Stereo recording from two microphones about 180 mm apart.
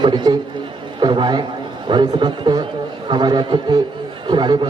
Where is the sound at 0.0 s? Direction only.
25° right (ahead or behind).